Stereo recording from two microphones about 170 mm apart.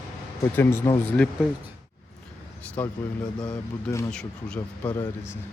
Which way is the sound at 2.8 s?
10° left (ahead or behind).